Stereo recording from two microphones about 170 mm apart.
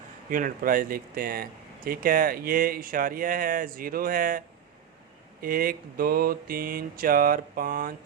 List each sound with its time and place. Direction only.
0.3 s speech: 55° right (ahead or behind)